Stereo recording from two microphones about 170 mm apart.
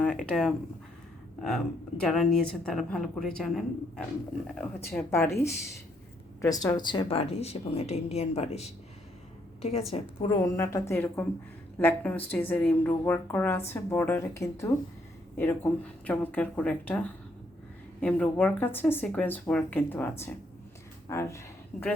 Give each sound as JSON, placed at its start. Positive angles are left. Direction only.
{"t": 0.0, "sound": "speech", "side_deg": 5}
{"t": 4.8, "sound": "speech", "side_deg": 15}
{"t": 6.4, "sound": "a woman's voice", "side_deg": 20}
{"t": 10.4, "sound": "speech", "side_deg": 15}